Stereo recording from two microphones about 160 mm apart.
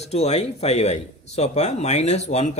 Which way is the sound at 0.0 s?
40° left (ahead or behind).